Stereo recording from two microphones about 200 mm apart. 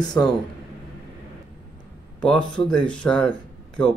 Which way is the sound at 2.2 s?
5° left (ahead or behind).